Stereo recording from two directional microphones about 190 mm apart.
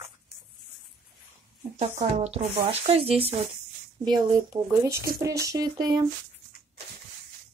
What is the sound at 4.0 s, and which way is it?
Speech, 20° right (ahead or behind).